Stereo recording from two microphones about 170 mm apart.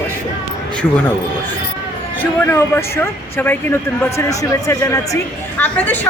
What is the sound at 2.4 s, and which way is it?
Speech, 15° left (ahead or behind).